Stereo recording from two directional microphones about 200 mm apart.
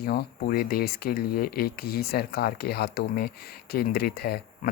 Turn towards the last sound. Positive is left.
turn(degrees=50)  # may be behind; listen again after turning